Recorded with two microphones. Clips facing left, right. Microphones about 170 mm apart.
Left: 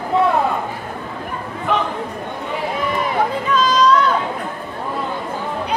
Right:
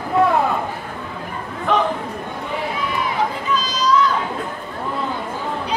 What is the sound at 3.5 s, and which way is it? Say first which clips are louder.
Chatter: left 5 dB; 60° left (ahead or behind).